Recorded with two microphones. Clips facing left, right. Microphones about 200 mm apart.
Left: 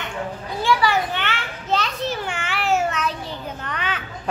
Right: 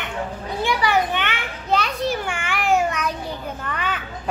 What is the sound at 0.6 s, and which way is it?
Children playing, 20° right (ahead or behind).